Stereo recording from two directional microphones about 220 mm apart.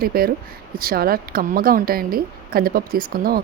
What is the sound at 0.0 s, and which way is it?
A woman's voice, 45° right (ahead or behind).